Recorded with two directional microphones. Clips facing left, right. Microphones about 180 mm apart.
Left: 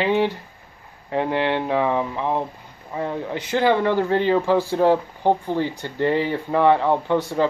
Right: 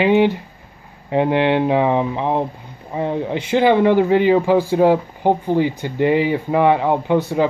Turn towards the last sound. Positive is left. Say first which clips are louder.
# right 3 dB
turn(degrees=-15)  # may be behind; listen again after turning